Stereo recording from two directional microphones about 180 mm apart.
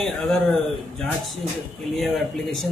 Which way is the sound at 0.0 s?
5° left (ahead or behind).